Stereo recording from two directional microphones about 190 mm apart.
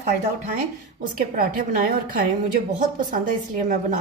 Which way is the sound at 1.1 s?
50° right (ahead or behind).